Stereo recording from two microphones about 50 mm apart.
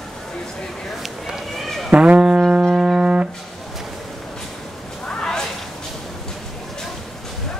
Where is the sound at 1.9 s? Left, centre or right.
Right.